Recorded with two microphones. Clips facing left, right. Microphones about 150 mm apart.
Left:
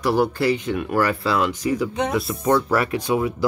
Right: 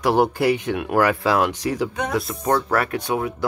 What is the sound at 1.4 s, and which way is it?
Speech, 90° right.